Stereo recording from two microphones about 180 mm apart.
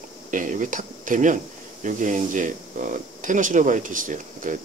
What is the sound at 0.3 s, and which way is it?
Speech, 45° right (ahead or behind).